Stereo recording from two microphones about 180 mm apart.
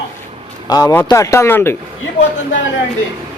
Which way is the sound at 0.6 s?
20° left (ahead or behind).